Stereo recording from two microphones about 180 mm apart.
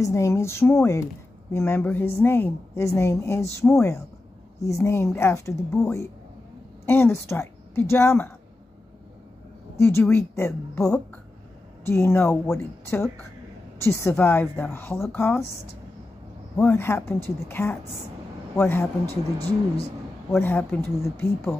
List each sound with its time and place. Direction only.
0.0 s a woman's voice: 15° left (ahead or behind)
9.8 s a woman's voice: 15° left (ahead or behind)
16.5 s a woman's voice: 10° left (ahead or behind)
20.2 s a woman's voice: 10° left (ahead or behind)